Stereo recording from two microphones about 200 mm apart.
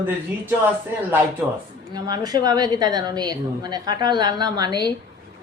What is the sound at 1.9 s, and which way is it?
A woman's voice, 20° right (ahead or behind).